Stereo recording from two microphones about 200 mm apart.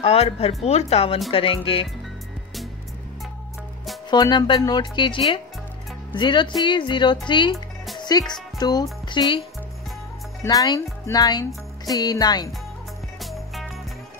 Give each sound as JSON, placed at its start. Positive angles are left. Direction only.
{"t": 0.0, "sound": "speech", "side_deg": 30}
{"t": 4.1, "sound": "speech", "side_deg": 20}
{"t": 7.5, "sound": "music", "side_deg": 0}
{"t": 8.0, "sound": "speech", "side_deg": 20}
{"t": 10.4, "sound": "speech", "side_deg": 20}
{"t": 13.2, "sound": "music", "side_deg": 0}